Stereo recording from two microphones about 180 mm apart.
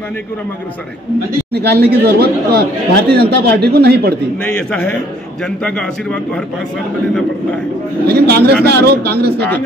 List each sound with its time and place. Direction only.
1.7 s speech: 65° right (ahead or behind)
4.5 s a man's voice: 5° left (ahead or behind)
8.1 s speech: 60° right (ahead or behind)